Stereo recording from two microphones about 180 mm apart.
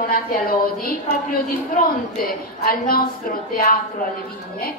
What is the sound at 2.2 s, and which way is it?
Speech, 55° left (ahead or behind).